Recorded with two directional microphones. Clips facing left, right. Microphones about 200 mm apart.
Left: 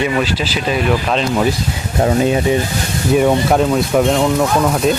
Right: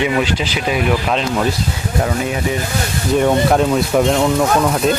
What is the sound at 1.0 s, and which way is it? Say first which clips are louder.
Speech: left 2 dB; centre (ahead or behind).